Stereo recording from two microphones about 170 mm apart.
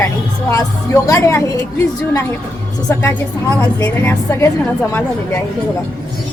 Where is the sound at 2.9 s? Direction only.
15° left (ahead or behind).